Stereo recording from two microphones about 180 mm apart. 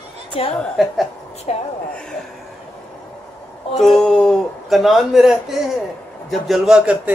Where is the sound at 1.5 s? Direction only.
40° left (ahead or behind).